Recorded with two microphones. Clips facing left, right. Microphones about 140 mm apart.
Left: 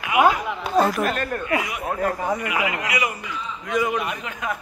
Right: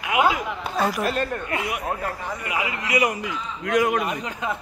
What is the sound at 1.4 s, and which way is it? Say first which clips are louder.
Speech: left 2 dB; 55° right (ahead or behind).